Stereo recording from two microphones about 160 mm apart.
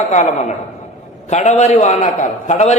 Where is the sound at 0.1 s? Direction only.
45° left (ahead or behind).